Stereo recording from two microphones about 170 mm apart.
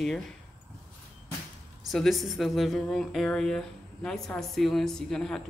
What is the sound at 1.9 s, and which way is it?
Speech, centre (ahead or behind).